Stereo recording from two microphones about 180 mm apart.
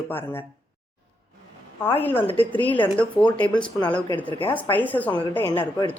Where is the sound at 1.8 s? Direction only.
10° left (ahead or behind).